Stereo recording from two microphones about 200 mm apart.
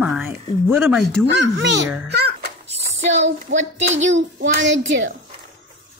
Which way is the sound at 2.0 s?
55° right (ahead or behind).